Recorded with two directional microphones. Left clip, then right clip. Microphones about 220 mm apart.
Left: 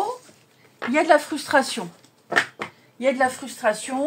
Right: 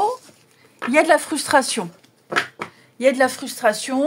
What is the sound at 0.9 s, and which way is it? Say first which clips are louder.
Speech: right 2 dB; 40° right (ahead or behind).